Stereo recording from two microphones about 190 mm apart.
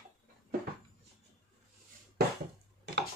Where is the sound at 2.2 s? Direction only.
55° right (ahead or behind).